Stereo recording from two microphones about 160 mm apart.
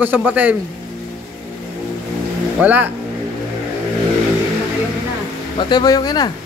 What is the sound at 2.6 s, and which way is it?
Speech, 10° right (ahead or behind).